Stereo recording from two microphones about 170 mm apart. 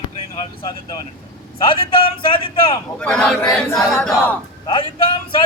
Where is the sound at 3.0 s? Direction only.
5° left (ahead or behind).